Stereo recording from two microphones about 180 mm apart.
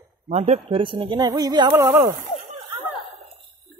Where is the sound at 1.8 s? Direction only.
15° right (ahead or behind).